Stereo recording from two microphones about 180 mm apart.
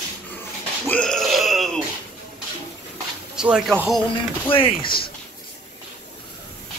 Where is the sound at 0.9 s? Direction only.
5° left (ahead or behind).